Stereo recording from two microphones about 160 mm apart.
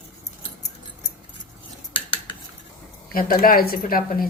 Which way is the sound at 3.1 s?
65° left (ahead or behind).